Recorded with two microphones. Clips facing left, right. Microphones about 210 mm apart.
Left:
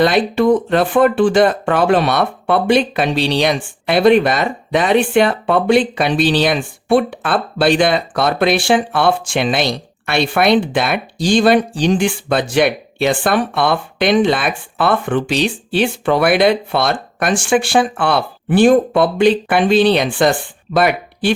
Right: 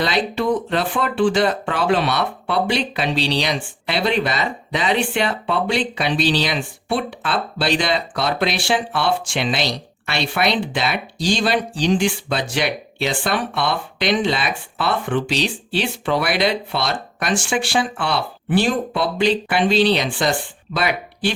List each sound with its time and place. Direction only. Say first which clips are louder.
0.0 s speech: left 7 dB; 50° left (ahead or behind)